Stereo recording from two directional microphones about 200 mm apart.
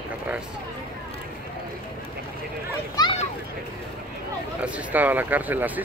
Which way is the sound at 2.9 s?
20° left (ahead or behind).